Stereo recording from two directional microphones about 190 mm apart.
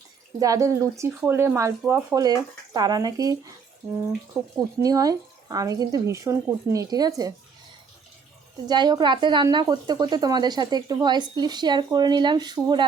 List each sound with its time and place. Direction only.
0.3 s a woman's voice: 20° right (ahead or behind)
4.4 s speech: centre (ahead or behind)
4.8 s speech: 20° right (ahead or behind)
8.6 s speech: 25° right (ahead or behind)